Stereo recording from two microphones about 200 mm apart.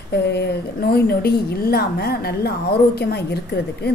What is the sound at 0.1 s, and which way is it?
A woman's voice, 55° left (ahead or behind).